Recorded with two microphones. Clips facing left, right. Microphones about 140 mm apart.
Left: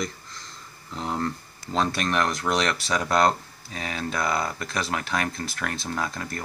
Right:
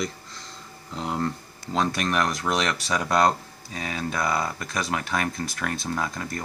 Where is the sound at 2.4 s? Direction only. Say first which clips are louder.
Left 1 dB; 5° right (ahead or behind).